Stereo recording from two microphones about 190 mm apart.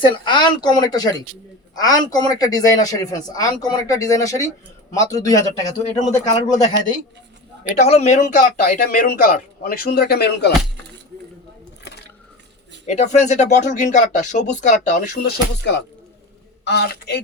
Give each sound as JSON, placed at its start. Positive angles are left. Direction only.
{"t": 0.0, "sound": "speech", "side_deg": 25}
{"t": 7.8, "sound": "a man's voice", "side_deg": 35}
{"t": 12.8, "sound": "speech", "side_deg": 35}
{"t": 16.6, "sound": "a man's voice", "side_deg": 60}